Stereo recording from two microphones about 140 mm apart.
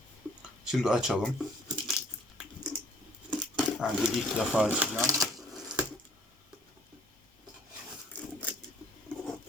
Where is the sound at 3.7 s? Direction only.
5° right (ahead or behind).